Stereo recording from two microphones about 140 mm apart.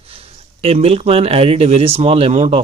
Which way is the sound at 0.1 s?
45° right (ahead or behind).